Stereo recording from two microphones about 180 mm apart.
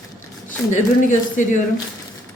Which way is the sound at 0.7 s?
45° left (ahead or behind).